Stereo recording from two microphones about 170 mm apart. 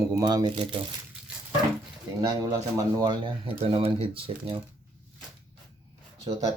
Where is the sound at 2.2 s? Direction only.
20° right (ahead or behind).